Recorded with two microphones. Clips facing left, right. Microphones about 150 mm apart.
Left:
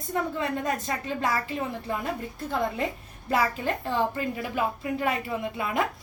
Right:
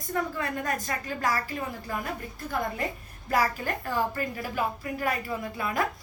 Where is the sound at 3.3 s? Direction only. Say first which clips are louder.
Left 1 dB; 25° left (ahead or behind).